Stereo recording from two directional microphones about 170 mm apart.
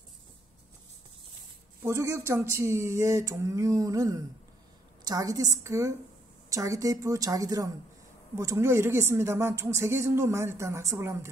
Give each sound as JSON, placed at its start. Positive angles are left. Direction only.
{"t": 1.8, "sound": "a woman's voice", "side_deg": -15}